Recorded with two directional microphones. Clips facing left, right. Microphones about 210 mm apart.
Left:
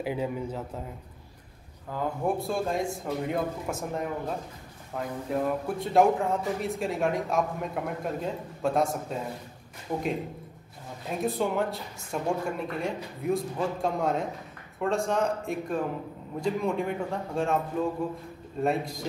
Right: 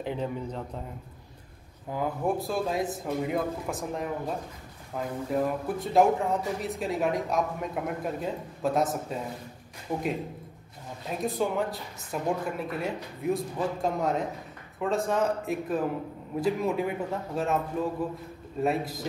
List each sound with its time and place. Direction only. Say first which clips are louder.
0.0 s a man's voice: left 1 dB; 5° left (ahead or behind)
1.9 s speech: right 1 dB; 15° right (ahead or behind)
2.2 s speech: left 1 dB; centre (ahead or behind)
11.1 s speech: left 1 dB; centre (ahead or behind)
18.6 s speech: even; centre (ahead or behind)